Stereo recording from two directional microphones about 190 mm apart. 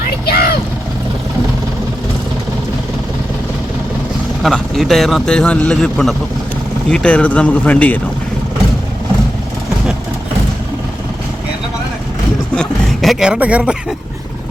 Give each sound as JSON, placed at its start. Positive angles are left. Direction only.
{"t": 0.3, "sound": "vehicle", "side_deg": 55}
{"t": 4.4, "sound": "a man's voice", "side_deg": 0}
{"t": 12.5, "sound": "speech", "side_deg": 0}